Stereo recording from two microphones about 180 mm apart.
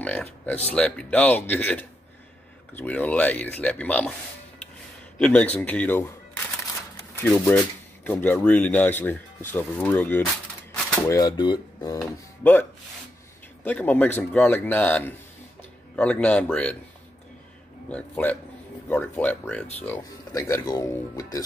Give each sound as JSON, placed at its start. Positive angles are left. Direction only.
{"t": 0.0, "sound": "speech", "side_deg": 10}
{"t": 5.2, "sound": "speech", "side_deg": 5}
{"t": 11.1, "sound": "speech", "side_deg": 20}
{"t": 13.7, "sound": "speech", "side_deg": 10}
{"t": 17.8, "sound": "speech", "side_deg": 10}